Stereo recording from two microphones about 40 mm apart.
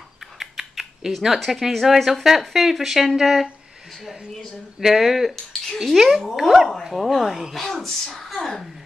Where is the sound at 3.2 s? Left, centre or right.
Centre.